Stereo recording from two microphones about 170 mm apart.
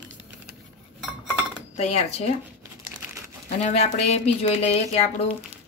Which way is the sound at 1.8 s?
40° left (ahead or behind).